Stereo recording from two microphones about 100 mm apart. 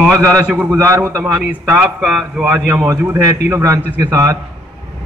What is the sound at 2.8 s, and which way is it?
A man's voice, 25° right (ahead or behind).